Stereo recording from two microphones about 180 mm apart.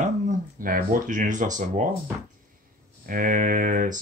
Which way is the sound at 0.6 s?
50° right (ahead or behind).